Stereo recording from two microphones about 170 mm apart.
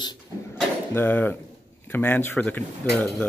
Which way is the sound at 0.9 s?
10° left (ahead or behind).